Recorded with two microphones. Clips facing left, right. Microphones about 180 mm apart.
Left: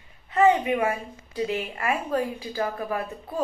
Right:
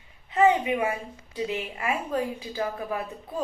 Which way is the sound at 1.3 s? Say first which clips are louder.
Left 3 dB; 20° right (ahead or behind).